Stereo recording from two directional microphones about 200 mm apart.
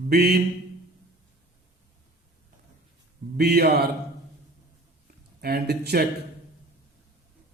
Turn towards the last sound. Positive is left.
turn(degrees=-50)  # may be behind; listen again after turning